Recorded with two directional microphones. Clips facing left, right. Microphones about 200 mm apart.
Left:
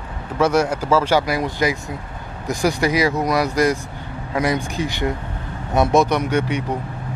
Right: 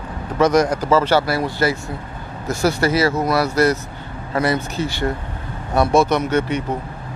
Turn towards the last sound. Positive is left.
turn(degrees=10)  # may be behind; listen again after turning